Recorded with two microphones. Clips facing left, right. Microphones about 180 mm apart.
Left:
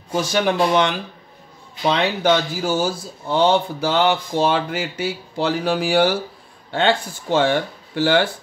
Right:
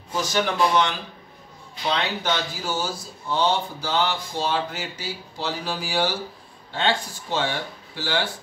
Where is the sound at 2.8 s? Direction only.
60° left (ahead or behind).